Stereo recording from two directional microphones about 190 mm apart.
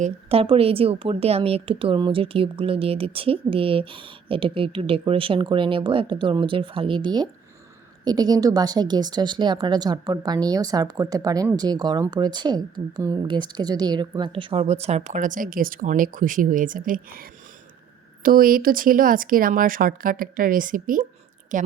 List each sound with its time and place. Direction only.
0.0 s speech: 30° right (ahead or behind)